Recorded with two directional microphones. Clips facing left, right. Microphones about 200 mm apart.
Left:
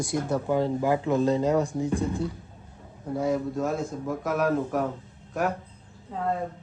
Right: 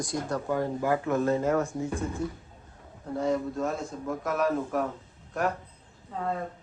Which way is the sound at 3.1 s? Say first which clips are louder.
Left 1 dB; 5° left (ahead or behind).